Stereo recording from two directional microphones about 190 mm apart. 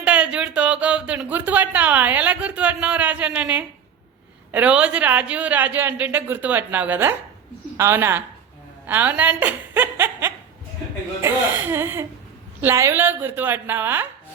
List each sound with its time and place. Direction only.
0.0 s a woman's voice: 5° right (ahead or behind)